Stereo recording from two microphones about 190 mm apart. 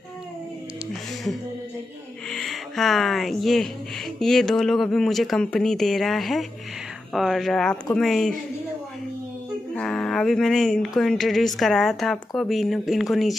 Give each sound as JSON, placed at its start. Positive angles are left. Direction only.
{"t": 2.3, "sound": "speech", "side_deg": 0}
{"t": 9.8, "sound": "a sound", "side_deg": 5}
{"t": 11.0, "sound": "speech", "side_deg": 0}